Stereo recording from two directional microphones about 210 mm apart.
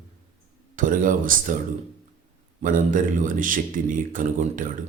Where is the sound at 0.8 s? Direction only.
40° right (ahead or behind).